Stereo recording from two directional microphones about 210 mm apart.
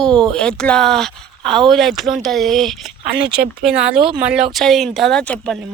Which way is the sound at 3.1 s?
50° right (ahead or behind).